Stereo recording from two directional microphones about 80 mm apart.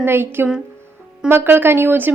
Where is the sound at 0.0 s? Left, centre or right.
Right.